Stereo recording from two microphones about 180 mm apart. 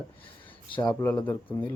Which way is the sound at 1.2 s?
10° left (ahead or behind).